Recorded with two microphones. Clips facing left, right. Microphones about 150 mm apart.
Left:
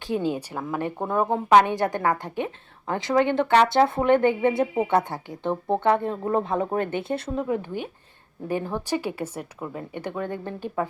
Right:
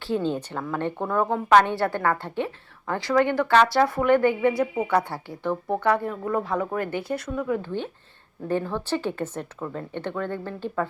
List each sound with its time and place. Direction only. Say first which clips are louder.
0.1 s a woman's voice: even; 10° left (ahead or behind)